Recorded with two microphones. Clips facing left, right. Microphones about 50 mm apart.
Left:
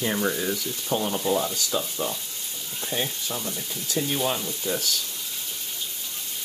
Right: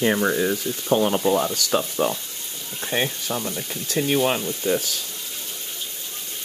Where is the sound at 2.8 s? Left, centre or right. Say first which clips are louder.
Right 5 dB; right.